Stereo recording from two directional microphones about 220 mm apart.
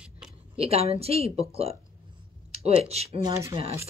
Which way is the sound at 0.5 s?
25° right (ahead or behind).